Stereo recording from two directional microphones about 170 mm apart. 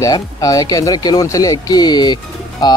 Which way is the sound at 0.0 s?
20° left (ahead or behind).